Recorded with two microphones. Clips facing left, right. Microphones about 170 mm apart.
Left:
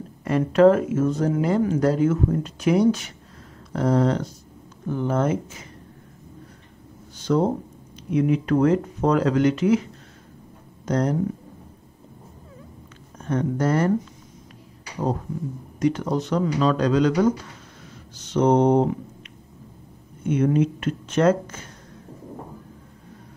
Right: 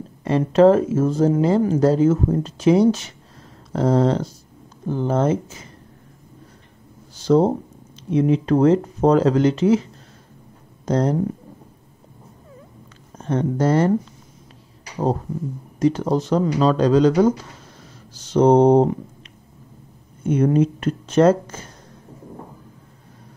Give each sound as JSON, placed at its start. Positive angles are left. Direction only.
{"t": 0.2, "sound": "speech", "side_deg": -25}
{"t": 7.2, "sound": "speech", "side_deg": -30}
{"t": 10.9, "sound": "speech", "side_deg": -30}
{"t": 13.2, "sound": "speech", "side_deg": -30}
{"t": 15.8, "sound": "speech", "side_deg": -30}
{"t": 20.2, "sound": "speech", "side_deg": -40}